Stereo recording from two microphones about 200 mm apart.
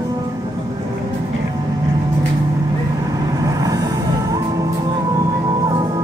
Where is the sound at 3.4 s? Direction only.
20° right (ahead or behind).